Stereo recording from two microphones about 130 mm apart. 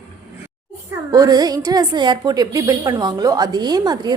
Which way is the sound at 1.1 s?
30° right (ahead or behind).